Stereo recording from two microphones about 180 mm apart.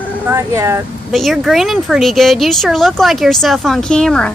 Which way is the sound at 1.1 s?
Centre (ahead or behind).